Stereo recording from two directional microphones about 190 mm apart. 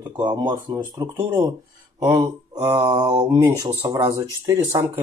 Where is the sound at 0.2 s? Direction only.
25° right (ahead or behind).